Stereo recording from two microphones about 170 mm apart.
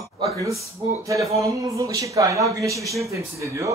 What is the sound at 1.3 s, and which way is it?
Speech, 20° right (ahead or behind).